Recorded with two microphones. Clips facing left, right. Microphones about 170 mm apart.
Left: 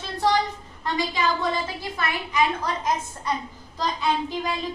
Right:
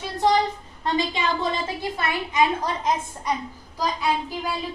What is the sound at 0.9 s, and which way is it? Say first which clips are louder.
A woman's voice: even; 25° right (ahead or behind).